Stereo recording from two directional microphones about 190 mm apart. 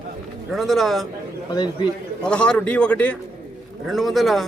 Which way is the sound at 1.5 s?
20° left (ahead or behind).